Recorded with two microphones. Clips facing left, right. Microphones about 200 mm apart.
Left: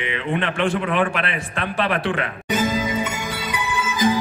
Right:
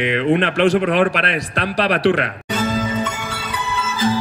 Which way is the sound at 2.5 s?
15° left (ahead or behind).